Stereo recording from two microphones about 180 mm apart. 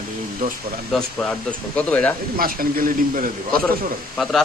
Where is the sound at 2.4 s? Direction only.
55° right (ahead or behind).